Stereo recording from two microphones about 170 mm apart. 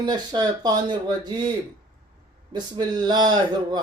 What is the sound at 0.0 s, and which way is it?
Mantra, 25° right (ahead or behind).